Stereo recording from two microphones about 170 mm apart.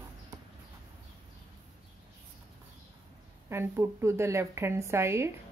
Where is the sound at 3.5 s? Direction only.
15° right (ahead or behind).